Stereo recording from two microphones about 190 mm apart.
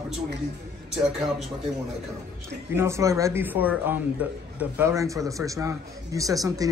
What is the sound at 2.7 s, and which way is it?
A man's voice, 15° right (ahead or behind).